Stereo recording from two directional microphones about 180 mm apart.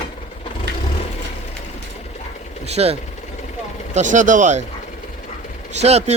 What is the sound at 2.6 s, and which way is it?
Speech, 35° right (ahead or behind).